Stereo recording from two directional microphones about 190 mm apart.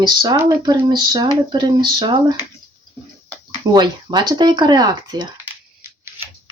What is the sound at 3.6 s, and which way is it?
Speech, 20° right (ahead or behind).